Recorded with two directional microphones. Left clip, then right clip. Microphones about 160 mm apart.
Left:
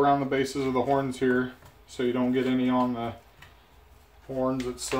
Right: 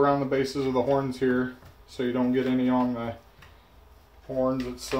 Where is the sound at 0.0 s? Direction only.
20° left (ahead or behind).